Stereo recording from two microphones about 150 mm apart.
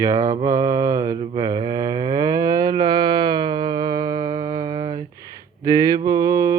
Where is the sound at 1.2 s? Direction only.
35° right (ahead or behind).